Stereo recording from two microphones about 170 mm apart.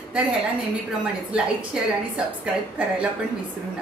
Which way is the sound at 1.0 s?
5° right (ahead or behind).